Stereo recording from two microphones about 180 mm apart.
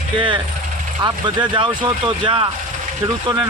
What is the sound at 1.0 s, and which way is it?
Speech, 25° right (ahead or behind).